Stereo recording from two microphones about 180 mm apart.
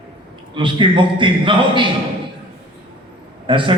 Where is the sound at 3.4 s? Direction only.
25° right (ahead or behind).